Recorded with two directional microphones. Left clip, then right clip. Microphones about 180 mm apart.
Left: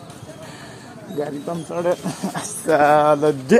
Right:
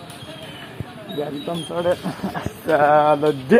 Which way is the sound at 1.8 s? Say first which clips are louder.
Even; 15° left (ahead or behind).